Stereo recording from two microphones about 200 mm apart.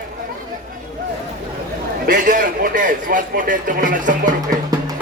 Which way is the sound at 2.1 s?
40° right (ahead or behind).